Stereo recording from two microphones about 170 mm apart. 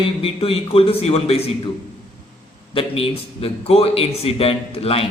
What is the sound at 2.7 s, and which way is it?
A man's voice, 35° left (ahead or behind).